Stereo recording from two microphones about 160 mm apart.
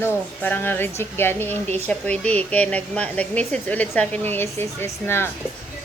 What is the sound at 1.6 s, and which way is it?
Speech, 40° right (ahead or behind).